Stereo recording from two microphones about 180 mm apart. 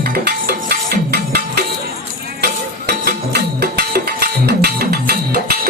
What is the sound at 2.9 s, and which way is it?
Music, 65° right (ahead or behind).